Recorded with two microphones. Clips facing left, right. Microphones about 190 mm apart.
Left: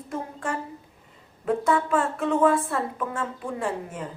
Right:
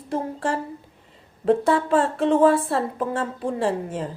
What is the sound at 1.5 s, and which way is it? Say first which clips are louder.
Speech: right 4 dB; 30° right (ahead or behind).